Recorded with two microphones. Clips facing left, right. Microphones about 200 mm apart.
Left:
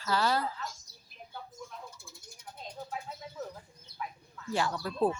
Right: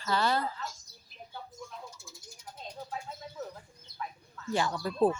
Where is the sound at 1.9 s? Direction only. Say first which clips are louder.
Right 1 dB; 55° left (ahead or behind).